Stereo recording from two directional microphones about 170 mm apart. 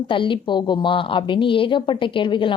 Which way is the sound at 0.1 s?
30° left (ahead or behind).